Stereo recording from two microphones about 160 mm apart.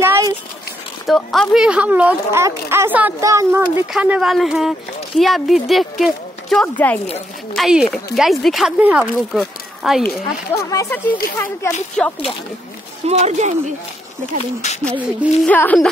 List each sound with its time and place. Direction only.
0.0 s a sound: 15° right (ahead or behind)
1.0 s speech: centre (ahead or behind); by 3.8 s 15° right (ahead or behind)
3.8 s speech: 5° right (ahead or behind)
10.7 s speech: 15° left (ahead or behind)
13.0 s speech: 45° right (ahead or behind)
14.4 s speech: 45° left (ahead or behind)
15.4 s speech: 10° left (ahead or behind)